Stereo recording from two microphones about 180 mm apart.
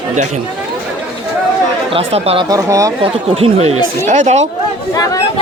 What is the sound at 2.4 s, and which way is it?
Speech, 20° right (ahead or behind).